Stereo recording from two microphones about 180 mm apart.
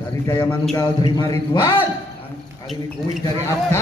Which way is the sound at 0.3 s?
15° left (ahead or behind).